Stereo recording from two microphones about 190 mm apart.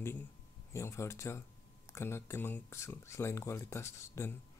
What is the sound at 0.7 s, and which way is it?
Speech, 15° left (ahead or behind).